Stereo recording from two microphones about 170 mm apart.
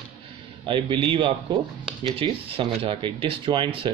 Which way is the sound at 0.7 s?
30° right (ahead or behind).